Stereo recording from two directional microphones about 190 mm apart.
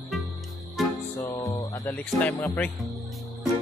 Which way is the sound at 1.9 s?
5° left (ahead or behind).